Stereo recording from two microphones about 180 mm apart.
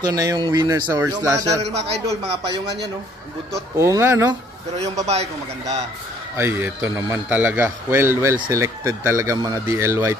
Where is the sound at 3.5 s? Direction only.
15° right (ahead or behind).